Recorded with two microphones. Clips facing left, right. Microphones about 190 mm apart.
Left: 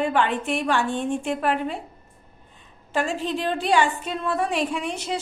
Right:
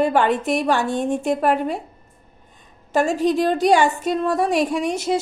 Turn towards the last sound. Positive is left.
turn(degrees=-45)  # may be behind; listen again after turning